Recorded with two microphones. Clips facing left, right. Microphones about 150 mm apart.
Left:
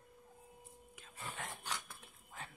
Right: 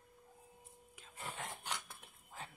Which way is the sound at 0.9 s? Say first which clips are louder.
Right 1 dB; 25° right (ahead or behind).